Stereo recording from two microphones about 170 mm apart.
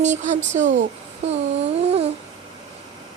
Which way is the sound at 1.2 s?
35° right (ahead or behind).